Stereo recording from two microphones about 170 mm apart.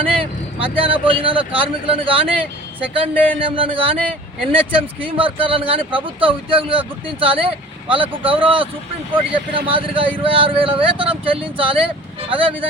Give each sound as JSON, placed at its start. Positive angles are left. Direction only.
{"t": 0.2, "sound": "speech", "side_deg": -30}